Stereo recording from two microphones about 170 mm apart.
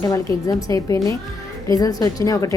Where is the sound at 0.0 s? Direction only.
20° left (ahead or behind).